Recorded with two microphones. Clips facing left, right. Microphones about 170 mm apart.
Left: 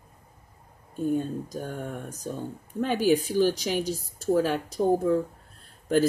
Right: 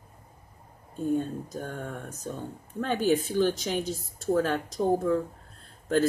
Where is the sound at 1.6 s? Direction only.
10° left (ahead or behind).